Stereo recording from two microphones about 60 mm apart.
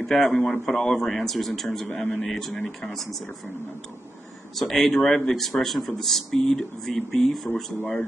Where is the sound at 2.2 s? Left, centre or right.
Centre.